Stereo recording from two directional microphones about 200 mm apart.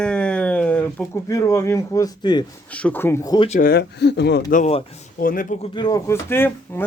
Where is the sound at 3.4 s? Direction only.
35° left (ahead or behind).